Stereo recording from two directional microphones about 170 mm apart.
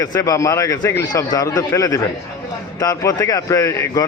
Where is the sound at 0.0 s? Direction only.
20° left (ahead or behind).